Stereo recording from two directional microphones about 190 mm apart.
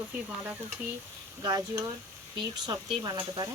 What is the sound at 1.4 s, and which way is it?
Speech, 20° right (ahead or behind).